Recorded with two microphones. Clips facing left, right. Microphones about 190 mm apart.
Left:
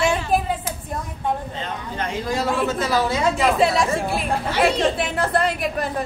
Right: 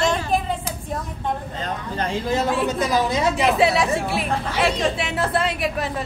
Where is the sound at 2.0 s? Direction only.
25° right (ahead or behind).